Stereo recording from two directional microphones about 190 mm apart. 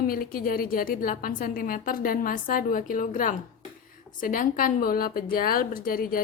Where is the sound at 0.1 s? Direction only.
50° left (ahead or behind).